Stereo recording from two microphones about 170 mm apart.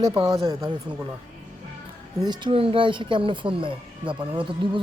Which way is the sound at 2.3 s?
30° right (ahead or behind).